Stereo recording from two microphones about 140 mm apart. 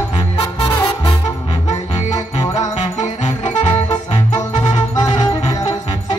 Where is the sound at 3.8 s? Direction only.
25° left (ahead or behind).